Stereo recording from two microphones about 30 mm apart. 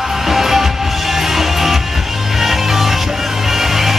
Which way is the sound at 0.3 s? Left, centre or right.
Centre.